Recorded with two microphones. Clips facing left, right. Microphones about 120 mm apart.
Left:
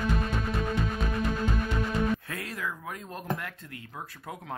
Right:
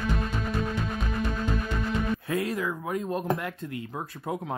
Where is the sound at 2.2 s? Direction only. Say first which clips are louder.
Right 8 dB; 15° right (ahead or behind).